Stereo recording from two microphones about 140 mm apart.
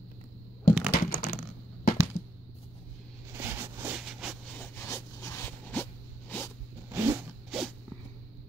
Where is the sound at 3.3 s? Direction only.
15° right (ahead or behind).